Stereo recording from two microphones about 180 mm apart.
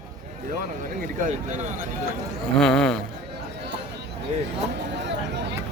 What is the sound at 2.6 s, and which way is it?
Speech, 5° left (ahead or behind).